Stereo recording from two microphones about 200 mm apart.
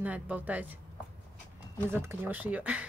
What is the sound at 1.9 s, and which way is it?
Speech, 10° right (ahead or behind).